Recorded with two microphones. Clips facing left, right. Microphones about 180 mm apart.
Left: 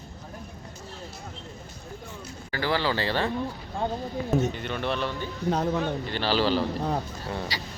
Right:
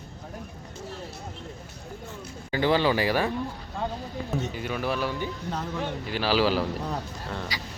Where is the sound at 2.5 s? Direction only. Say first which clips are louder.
Right 4 dB; 20° right (ahead or behind).